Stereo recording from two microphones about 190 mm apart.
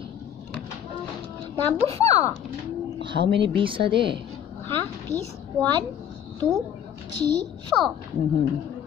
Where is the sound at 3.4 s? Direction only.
25° right (ahead or behind).